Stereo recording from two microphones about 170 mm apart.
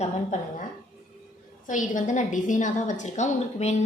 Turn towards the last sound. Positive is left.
turn(degrees=40)  # may be behind; listen again after turning